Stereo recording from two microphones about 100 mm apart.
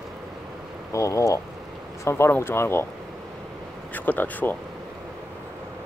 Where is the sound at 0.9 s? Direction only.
30° left (ahead or behind).